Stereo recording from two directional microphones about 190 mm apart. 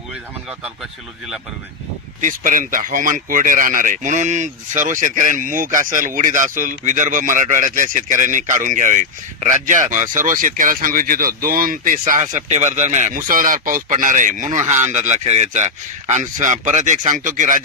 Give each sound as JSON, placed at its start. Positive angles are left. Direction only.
{"t": 2.2, "sound": "speech", "side_deg": -45}